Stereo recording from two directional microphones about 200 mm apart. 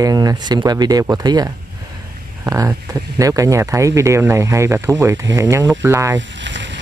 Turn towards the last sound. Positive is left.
turn(degrees=-65)  # may be behind; listen again after turning